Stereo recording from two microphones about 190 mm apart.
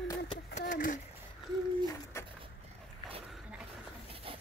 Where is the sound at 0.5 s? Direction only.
45° left (ahead or behind).